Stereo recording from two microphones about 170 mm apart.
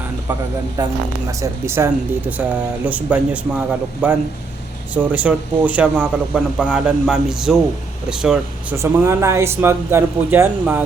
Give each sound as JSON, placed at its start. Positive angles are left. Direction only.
{"t": 0.8, "sound": "speech", "side_deg": -20}
{"t": 5.1, "sound": "speech", "side_deg": -10}
{"t": 8.7, "sound": "speech", "side_deg": -15}